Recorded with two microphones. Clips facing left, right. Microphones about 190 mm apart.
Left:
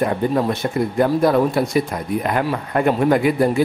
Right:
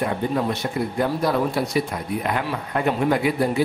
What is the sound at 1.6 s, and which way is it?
Speech, 50° left (ahead or behind).